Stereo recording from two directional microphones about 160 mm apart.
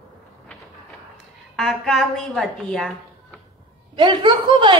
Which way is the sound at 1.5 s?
5° left (ahead or behind).